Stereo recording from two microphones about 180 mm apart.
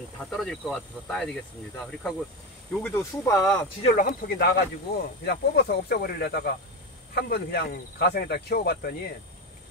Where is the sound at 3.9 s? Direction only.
50° left (ahead or behind).